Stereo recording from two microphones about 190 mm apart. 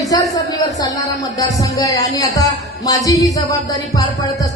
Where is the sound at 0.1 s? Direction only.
20° left (ahead or behind).